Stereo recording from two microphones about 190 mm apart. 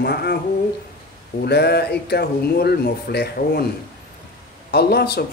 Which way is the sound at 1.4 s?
60° left (ahead or behind).